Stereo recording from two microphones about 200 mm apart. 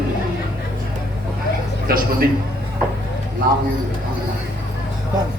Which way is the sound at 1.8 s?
45° right (ahead or behind).